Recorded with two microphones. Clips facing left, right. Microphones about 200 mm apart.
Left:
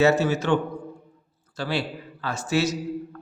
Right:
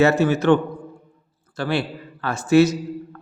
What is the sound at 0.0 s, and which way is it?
A man's voice, 55° right (ahead or behind).